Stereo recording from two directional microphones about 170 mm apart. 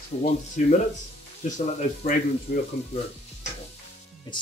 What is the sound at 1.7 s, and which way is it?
Speech, 50° left (ahead or behind).